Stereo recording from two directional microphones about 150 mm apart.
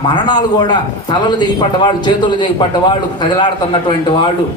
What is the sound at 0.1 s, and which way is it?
A man's voice, 30° left (ahead or behind).